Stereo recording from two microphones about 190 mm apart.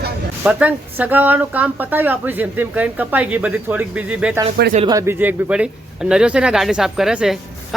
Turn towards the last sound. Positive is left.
turn(degrees=0)  # may be behind; listen again after turning